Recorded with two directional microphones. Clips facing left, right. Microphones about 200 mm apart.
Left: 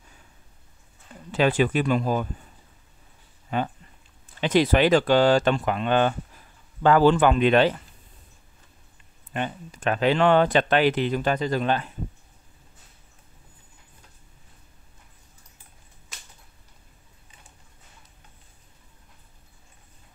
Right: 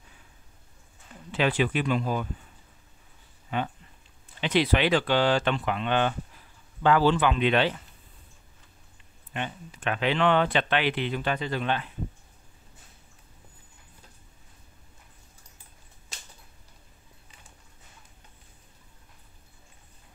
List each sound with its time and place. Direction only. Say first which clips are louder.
1.3 s speech: left 4 dB; 45° left (ahead or behind)
3.4 s speech: left 3 dB; 40° left (ahead or behind)
9.3 s speech: left 5 dB; 40° left (ahead or behind)